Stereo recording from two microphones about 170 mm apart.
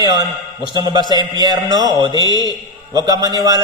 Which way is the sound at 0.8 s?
25° right (ahead or behind).